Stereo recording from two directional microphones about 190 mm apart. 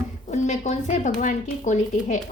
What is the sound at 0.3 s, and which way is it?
Speech, 40° left (ahead or behind).